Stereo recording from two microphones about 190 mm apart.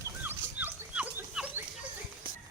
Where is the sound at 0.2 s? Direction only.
10° right (ahead or behind).